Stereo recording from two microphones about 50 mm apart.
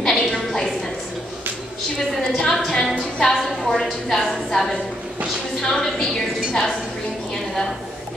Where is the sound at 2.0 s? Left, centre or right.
Centre.